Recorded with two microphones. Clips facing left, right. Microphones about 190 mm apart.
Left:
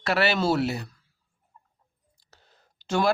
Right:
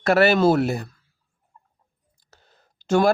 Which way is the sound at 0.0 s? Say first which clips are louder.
Right 7 dB; 50° right (ahead or behind).